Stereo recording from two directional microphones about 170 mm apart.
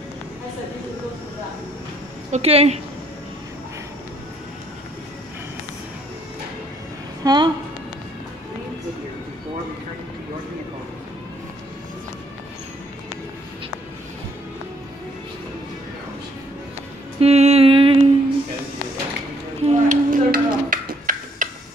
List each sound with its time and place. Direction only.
2.3 s a woman's voice: 40° right (ahead or behind)
7.2 s a woman's voice: 25° right (ahead or behind)
17.2 s music: 40° right (ahead or behind)
19.6 s a sound: 50° right (ahead or behind)